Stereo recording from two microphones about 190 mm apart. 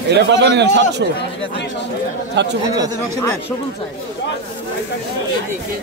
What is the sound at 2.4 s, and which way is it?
Speech, 65° right (ahead or behind).